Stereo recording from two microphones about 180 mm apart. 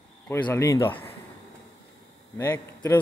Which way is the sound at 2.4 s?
15° left (ahead or behind).